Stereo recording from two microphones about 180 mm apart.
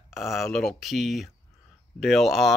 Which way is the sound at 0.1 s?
Centre (ahead or behind).